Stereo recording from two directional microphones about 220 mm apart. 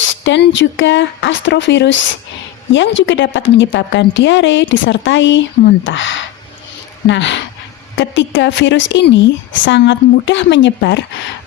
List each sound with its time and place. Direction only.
0.1 s a woman's voice: 60° left (ahead or behind)